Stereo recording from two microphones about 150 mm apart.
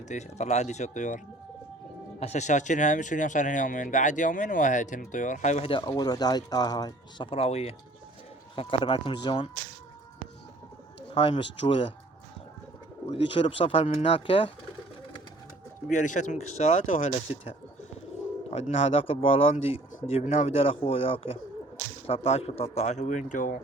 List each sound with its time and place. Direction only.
0.1 s speech: 50° left (ahead or behind)
5.7 s speech: 30° left (ahead or behind)
11.1 s speech: 35° left (ahead or behind)
13.1 s speech: 35° left (ahead or behind)
15.9 s speech: 55° left (ahead or behind)
18.5 s speech: 40° left (ahead or behind); by 23.6 s 60° left (ahead or behind)